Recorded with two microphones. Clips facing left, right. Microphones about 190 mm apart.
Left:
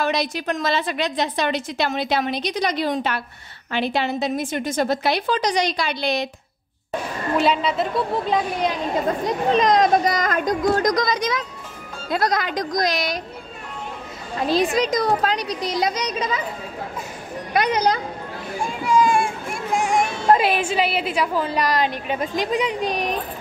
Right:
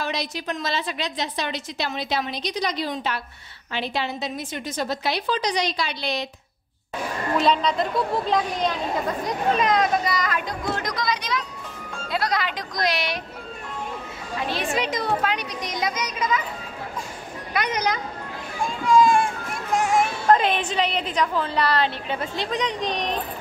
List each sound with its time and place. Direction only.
0.0 s a woman's voice: 55° left (ahead or behind)
7.3 s a child's voice: 5° left (ahead or behind)
9.5 s a woman's voice: 35° left (ahead or behind)
14.5 s a woman's voice: 40° left (ahead or behind)
18.7 s children playing: 15° left (ahead or behind)
19.8 s music: 5° right (ahead or behind)
20.2 s a woman's voice: 10° left (ahead or behind)